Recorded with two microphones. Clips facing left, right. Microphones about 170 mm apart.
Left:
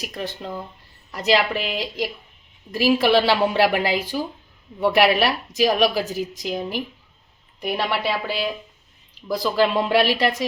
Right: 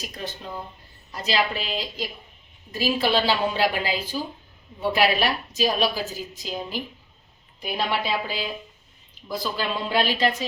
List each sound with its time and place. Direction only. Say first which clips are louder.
0.0 s a woman's voice: left 5 dB; 75° left (ahead or behind)
9.1 s a woman's voice: left 8 dB; 85° left